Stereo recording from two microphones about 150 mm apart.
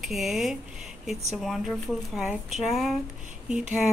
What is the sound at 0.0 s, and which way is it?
Speech, centre (ahead or behind).